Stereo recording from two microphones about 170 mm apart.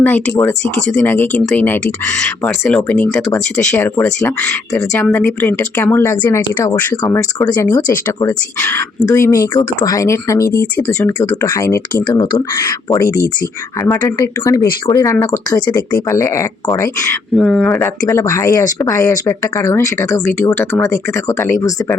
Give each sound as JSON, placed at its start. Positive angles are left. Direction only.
{"t": 0.0, "sound": "speech", "side_deg": 10}
{"t": 6.9, "sound": "speech", "side_deg": 20}
{"t": 17.3, "sound": "speech", "side_deg": 5}